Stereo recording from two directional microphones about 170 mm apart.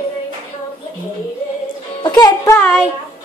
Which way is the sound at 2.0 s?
20° left (ahead or behind).